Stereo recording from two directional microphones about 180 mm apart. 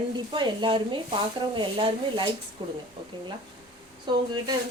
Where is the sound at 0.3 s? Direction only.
25° right (ahead or behind).